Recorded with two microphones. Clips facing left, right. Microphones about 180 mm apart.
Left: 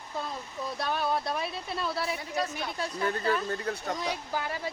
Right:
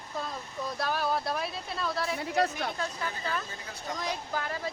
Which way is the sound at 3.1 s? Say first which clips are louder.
Left 7 dB; 60° left (ahead or behind).